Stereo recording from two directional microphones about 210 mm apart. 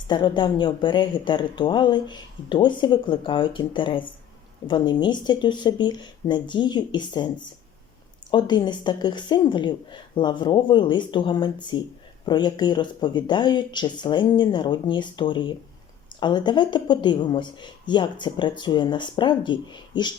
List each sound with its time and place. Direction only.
0.1 s speech: 20° left (ahead or behind)